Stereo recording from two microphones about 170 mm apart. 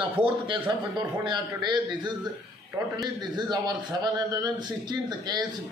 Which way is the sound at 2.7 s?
15° right (ahead or behind).